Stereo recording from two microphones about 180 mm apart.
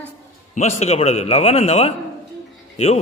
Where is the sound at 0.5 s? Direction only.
40° left (ahead or behind).